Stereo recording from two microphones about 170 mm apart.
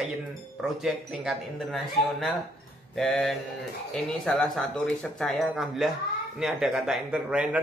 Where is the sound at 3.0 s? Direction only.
Centre (ahead or behind).